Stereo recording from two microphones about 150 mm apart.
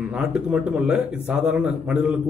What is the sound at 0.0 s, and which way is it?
Speech, 5° right (ahead or behind).